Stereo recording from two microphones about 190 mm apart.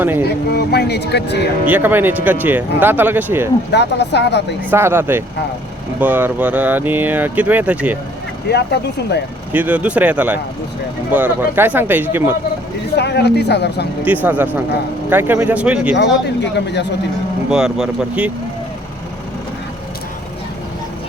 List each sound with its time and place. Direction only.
0.0 s speech: 10° right (ahead or behind)
0.5 s speech: 60° left (ahead or behind)
1.6 s speech: 10° right (ahead or behind)
3.7 s speech: 65° left (ahead or behind)
4.7 s speech: 10° right (ahead or behind)
8.4 s speech: 60° left (ahead or behind)
9.5 s speech: 10° right (ahead or behind)
13.0 s speech: 60° left (ahead or behind)
14.0 s speech: 10° right (ahead or behind)
16.0 s speech: 65° left (ahead or behind)
17.5 s speech: 5° right (ahead or behind)